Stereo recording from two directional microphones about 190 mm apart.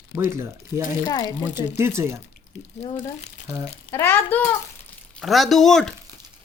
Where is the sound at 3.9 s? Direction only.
10° left (ahead or behind).